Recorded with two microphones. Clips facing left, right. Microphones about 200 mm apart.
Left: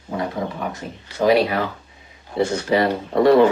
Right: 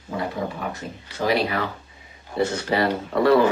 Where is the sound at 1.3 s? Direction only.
25° left (ahead or behind).